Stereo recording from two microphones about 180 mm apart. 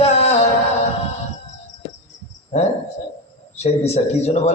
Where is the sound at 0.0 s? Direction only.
35° left (ahead or behind).